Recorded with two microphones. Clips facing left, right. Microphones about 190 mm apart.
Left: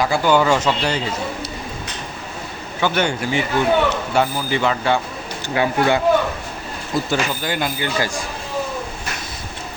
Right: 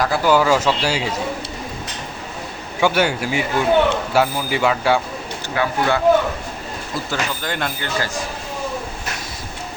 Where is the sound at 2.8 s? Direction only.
5° right (ahead or behind).